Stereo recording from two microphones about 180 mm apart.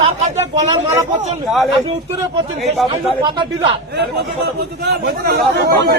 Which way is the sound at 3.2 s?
25° right (ahead or behind).